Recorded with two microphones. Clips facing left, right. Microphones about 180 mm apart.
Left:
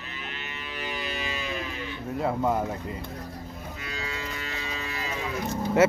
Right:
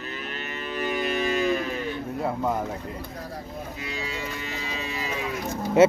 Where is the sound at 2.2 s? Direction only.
Centre (ahead or behind).